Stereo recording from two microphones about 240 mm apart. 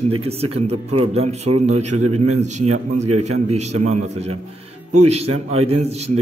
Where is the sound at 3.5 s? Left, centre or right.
Right.